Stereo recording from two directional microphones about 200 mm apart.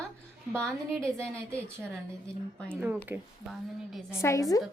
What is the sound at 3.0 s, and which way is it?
A woman's voice, 5° right (ahead or behind).